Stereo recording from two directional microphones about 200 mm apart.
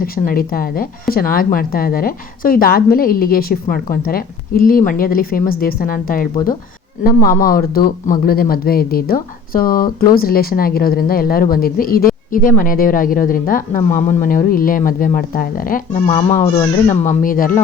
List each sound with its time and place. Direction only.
0.0 s a woman's voice: 45° left (ahead or behind)